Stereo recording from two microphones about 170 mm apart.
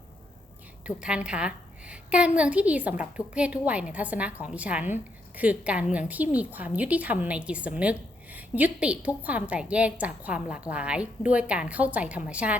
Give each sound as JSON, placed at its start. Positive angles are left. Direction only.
{"t": 0.9, "sound": "a woman's voice", "side_deg": -5}